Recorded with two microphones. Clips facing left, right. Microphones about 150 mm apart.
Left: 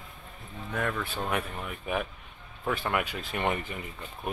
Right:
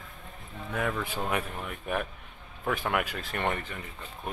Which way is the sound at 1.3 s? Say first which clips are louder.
Even; centre (ahead or behind).